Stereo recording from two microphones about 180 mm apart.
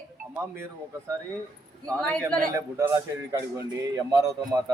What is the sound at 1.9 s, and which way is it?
Speech, 5° left (ahead or behind).